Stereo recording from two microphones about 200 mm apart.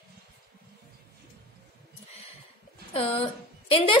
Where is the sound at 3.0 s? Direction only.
30° left (ahead or behind).